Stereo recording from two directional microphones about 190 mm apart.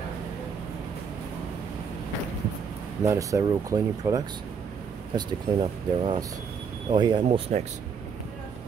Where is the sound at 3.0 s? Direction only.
15° right (ahead or behind); by 7.6 s 35° right (ahead or behind).